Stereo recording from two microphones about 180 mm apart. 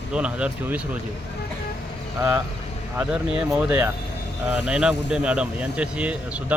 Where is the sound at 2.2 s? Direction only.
15° right (ahead or behind).